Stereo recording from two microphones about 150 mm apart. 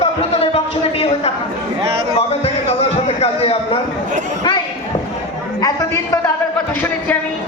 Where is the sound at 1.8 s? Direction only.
35° right (ahead or behind).